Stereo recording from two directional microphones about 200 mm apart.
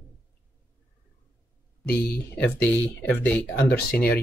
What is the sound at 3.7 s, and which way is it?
Speech, 50° left (ahead or behind).